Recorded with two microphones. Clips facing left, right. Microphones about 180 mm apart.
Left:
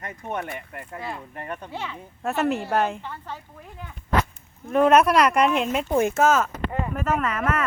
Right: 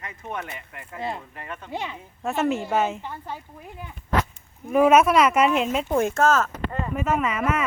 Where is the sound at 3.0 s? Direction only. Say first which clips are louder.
Right 1 dB; 15° right (ahead or behind).